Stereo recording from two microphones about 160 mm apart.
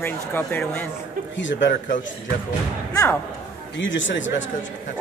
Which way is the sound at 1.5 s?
90° left.